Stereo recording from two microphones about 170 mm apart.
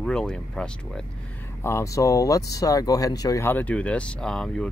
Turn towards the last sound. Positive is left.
turn(degrees=5)  # may be behind; listen again after turning